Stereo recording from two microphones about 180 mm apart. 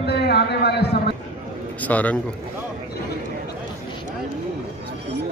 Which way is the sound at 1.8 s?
10° left (ahead or behind).